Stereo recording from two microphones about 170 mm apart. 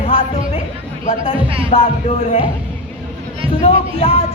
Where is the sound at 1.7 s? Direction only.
35° left (ahead or behind).